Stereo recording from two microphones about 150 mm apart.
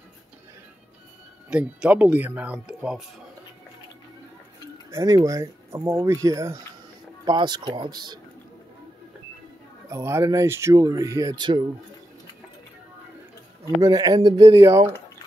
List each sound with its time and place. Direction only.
1.5 s speech: 10° right (ahead or behind)
4.9 s speech: 20° right (ahead or behind)
9.8 s speech: 20° right (ahead or behind)
13.7 s speech: 25° right (ahead or behind)